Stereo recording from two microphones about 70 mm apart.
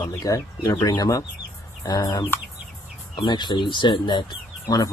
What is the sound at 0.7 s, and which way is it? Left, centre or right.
Speech, left.